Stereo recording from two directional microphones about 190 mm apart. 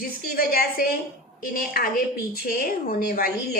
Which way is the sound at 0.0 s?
50° left (ahead or behind).